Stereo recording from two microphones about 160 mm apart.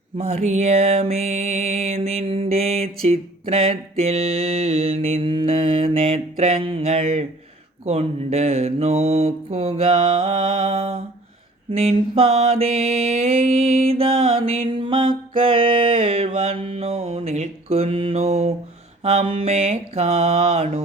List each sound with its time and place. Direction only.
0.2 s music: 40° right (ahead or behind)
7.9 s mantra: 40° right (ahead or behind)
19.0 s music: 40° right (ahead or behind)